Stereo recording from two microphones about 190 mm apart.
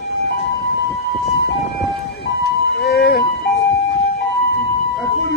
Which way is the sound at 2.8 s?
55° left (ahead or behind).